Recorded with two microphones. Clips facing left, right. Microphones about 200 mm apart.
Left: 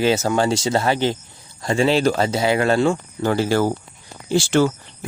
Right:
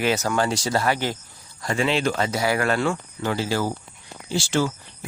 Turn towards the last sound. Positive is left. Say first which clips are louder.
# left 6 dB
turn(degrees=60)  # may be behind; listen again after turning